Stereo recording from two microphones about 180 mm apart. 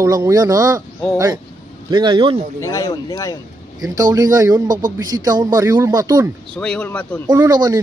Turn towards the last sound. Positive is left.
turn(degrees=-20)  # may be behind; listen again after turning